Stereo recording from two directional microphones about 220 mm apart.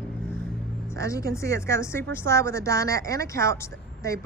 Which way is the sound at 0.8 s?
15° left (ahead or behind).